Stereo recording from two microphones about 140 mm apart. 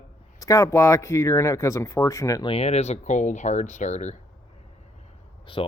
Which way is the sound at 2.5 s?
45° left (ahead or behind).